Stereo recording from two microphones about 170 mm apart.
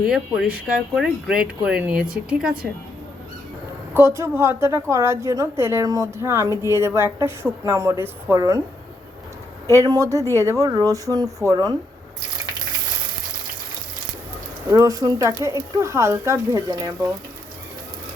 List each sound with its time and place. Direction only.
0.0 s speech: 5° right (ahead or behind)
3.9 s a woman's voice: 15° right (ahead or behind)
9.8 s speech: 20° right (ahead or behind)
14.7 s speech: 20° right (ahead or behind)